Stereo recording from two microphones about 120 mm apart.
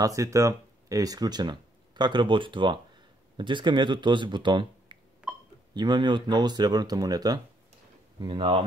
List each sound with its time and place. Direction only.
0.0 s speech: 25° right (ahead or behind)
5.2 s hiccup: 10° right (ahead or behind)
5.8 s speech: 40° right (ahead or behind)
8.2 s speech: 45° right (ahead or behind)